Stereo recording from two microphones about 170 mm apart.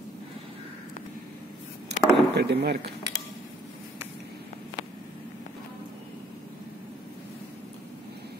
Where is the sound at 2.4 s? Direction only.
80° right.